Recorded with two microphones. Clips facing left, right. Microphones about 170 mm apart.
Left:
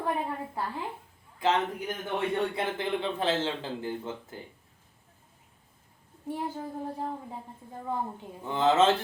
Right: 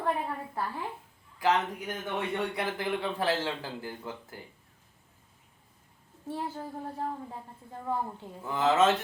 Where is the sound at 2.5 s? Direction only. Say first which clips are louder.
Left 1 dB; 25° left (ahead or behind).